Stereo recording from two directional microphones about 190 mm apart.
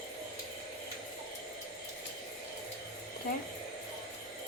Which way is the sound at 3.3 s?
55° left (ahead or behind).